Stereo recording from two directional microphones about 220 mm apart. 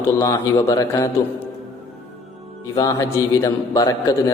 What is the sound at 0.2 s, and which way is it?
Speech, 10° left (ahead or behind).